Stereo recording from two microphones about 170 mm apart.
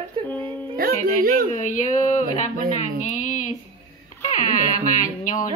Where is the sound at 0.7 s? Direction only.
60° right (ahead or behind).